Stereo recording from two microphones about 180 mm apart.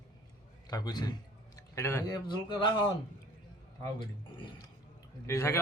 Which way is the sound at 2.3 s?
25° left (ahead or behind).